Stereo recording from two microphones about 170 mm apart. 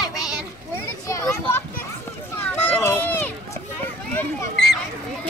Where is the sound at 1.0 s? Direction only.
20° left (ahead or behind).